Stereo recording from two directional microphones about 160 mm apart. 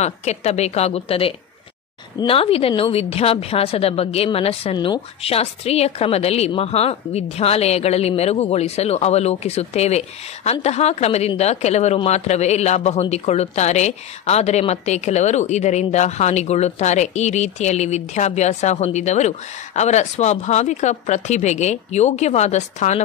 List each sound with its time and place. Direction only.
0.0 s a woman's voice: 45° left (ahead or behind)